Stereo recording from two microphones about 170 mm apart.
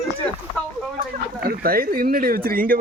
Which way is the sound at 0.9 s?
60° right (ahead or behind).